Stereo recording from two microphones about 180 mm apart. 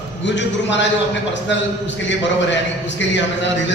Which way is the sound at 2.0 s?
85° left.